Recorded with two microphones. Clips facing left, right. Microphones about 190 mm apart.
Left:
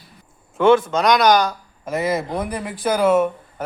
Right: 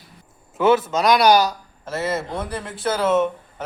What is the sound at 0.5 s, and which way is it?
A man's voice, 5° right (ahead or behind).